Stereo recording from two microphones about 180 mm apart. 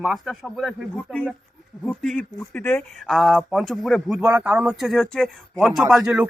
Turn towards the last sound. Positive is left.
turn(degrees=-5)  # may be behind; listen again after turning